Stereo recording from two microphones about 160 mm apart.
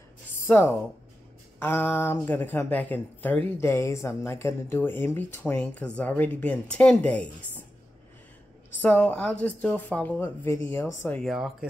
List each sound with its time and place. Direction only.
0.5 s speech: 15° left (ahead or behind)
8.8 s speech: 10° left (ahead or behind)
11.2 s speech: centre (ahead or behind)